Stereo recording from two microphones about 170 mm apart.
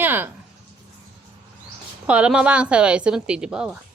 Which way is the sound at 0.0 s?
10° right (ahead or behind).